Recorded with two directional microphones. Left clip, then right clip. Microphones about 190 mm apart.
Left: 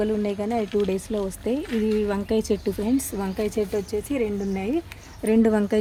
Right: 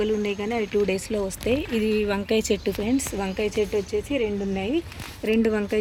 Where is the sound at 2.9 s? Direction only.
50° left (ahead or behind).